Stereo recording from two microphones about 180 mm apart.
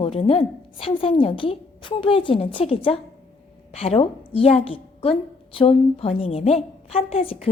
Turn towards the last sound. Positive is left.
turn(degrees=35)  # may be behind; listen again after turning